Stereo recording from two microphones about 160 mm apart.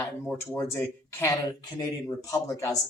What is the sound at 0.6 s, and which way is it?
Speech, 15° left (ahead or behind).